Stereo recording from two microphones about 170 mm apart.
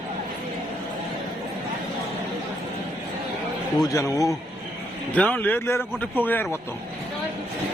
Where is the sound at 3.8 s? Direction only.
20° left (ahead or behind).